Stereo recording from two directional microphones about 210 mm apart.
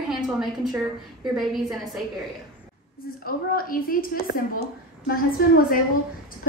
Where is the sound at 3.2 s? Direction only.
45° left (ahead or behind).